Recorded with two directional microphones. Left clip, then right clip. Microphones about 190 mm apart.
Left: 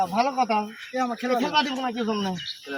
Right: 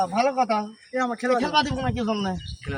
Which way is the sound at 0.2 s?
10° right (ahead or behind).